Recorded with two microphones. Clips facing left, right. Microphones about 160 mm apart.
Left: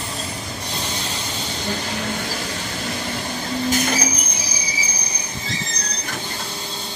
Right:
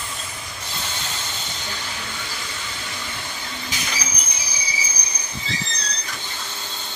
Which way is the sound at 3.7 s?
50° left (ahead or behind).